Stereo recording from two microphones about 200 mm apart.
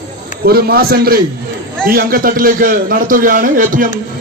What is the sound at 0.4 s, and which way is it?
A man's voice, 50° right (ahead or behind).